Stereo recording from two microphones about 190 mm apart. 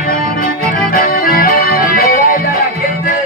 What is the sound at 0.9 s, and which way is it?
Music, 50° left (ahead or behind).